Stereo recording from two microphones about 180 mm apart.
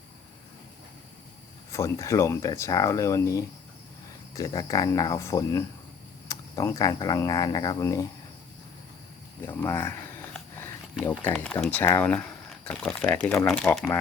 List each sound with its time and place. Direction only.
1.7 s speech: 15° left (ahead or behind)
9.5 s a sound: 10° left (ahead or behind)
11.3 s speech: 10° left (ahead or behind)